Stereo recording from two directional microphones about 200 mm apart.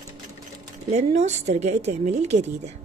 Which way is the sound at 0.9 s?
35° right (ahead or behind).